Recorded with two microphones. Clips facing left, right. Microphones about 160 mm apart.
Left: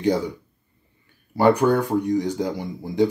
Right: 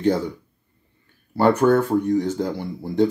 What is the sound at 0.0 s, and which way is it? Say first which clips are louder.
Speech: right 1 dB; 10° left (ahead or behind).